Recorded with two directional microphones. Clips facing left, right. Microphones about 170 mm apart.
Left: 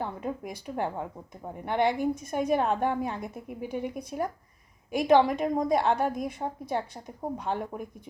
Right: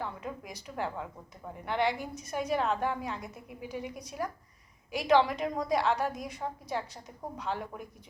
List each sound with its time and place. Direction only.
0.0 s a woman's voice: 45° left (ahead or behind)